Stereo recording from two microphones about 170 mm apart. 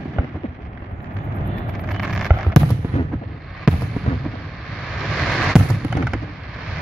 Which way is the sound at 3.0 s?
35° left (ahead or behind).